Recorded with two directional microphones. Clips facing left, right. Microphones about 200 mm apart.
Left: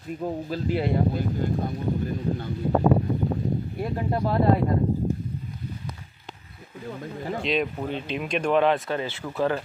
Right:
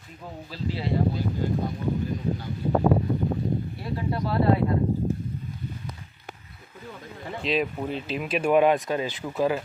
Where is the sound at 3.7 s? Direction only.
50° left (ahead or behind).